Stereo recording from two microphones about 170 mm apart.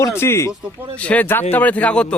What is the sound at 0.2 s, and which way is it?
A man's voice, 15° left (ahead or behind).